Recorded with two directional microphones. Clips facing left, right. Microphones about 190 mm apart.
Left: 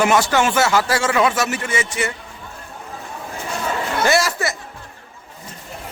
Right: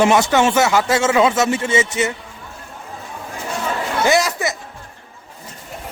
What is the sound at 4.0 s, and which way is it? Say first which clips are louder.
Chatter: right 2 dB; 15° right (ahead or behind).